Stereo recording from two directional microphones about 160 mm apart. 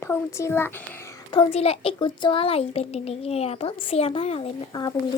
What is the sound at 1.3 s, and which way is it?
Speech, 35° left (ahead or behind).